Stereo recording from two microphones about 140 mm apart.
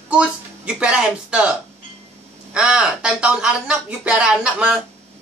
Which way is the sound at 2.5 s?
5° right (ahead or behind).